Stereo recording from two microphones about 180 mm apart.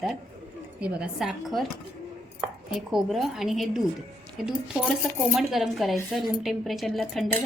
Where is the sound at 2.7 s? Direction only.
Centre (ahead or behind).